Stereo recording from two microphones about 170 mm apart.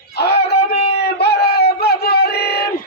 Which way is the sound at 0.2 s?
75° left (ahead or behind).